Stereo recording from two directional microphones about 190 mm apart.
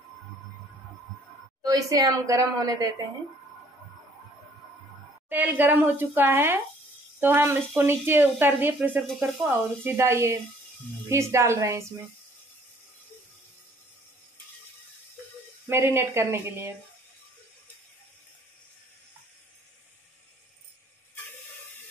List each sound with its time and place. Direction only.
1.6 s speech: 20° right (ahead or behind)
5.3 s speech: 10° right (ahead or behind)
15.7 s speech: 10° right (ahead or behind)